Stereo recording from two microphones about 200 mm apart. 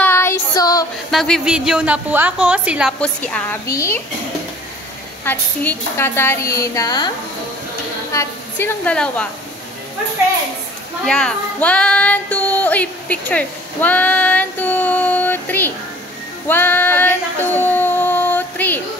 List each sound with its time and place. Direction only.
0.0 s child singing: 10° left (ahead or behind)
1.1 s a woman's voice: centre (ahead or behind)
3.0 s a woman's voice: 5° left (ahead or behind)
5.2 s a woman's voice: 10° left (ahead or behind)
8.1 s a woman's voice: 15° left (ahead or behind)
11.1 s child singing: 5° left (ahead or behind)